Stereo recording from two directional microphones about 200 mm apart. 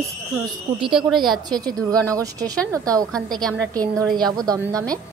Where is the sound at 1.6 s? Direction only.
20° right (ahead or behind).